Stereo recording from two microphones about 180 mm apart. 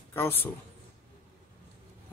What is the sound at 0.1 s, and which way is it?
Speech, 10° left (ahead or behind).